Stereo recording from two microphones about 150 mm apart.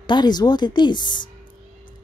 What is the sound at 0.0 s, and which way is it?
A woman's voice, 30° left (ahead or behind).